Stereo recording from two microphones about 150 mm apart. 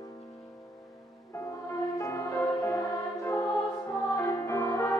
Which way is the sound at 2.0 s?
20° left (ahead or behind).